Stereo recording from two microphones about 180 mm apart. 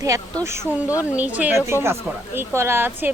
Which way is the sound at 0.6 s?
20° left (ahead or behind).